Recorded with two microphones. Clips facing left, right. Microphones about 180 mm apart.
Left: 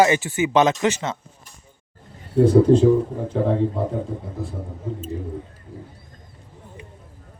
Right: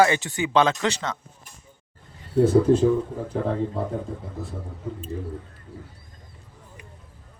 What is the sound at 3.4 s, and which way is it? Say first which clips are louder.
Speech: left 6 dB; 30° left (ahead or behind).